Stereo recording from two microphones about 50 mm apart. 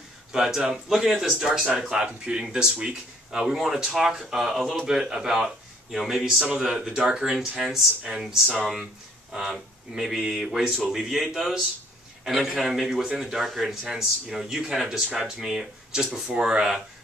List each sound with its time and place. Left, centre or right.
0.3 s speech: centre
8.0 s speech: centre